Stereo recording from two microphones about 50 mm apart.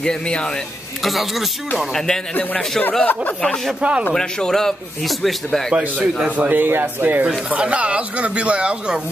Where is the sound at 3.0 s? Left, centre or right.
Left.